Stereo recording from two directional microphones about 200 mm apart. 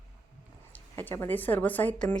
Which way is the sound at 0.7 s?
10° left (ahead or behind).